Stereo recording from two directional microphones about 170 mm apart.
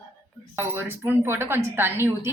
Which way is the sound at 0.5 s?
15° right (ahead or behind).